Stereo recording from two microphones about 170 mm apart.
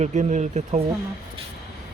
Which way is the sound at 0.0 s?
45° right (ahead or behind).